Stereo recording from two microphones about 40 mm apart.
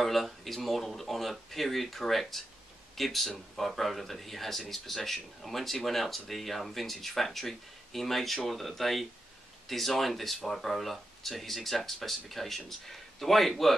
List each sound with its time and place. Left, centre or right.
0.0 s speech: centre